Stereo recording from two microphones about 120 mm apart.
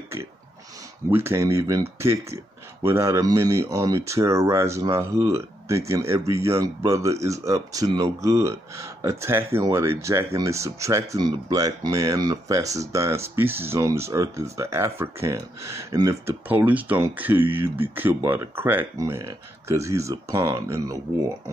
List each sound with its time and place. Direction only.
1.1 s speech: 20° right (ahead or behind)
16.4 s speech: 15° right (ahead or behind)